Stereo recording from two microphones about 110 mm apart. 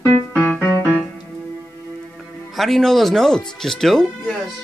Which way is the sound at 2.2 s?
Centre (ahead or behind).